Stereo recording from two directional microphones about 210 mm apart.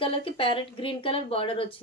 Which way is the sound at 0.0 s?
25° left (ahead or behind).